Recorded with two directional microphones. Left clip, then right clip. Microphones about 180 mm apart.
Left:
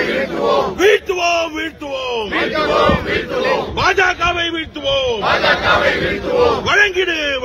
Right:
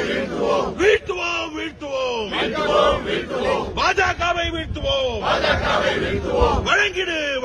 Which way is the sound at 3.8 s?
55° left (ahead or behind).